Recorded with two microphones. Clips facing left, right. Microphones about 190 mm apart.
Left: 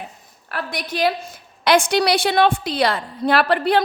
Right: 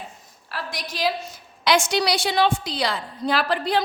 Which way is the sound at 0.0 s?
55° left (ahead or behind).